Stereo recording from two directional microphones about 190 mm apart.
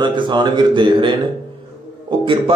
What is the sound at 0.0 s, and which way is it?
A man's voice, 25° right (ahead or behind).